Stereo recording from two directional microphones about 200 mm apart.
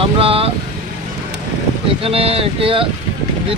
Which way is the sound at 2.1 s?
30° right (ahead or behind).